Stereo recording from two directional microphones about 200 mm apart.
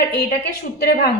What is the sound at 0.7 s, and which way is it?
Speech, 55° left (ahead or behind).